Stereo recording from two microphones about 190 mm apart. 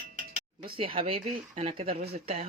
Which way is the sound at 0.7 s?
30° right (ahead or behind).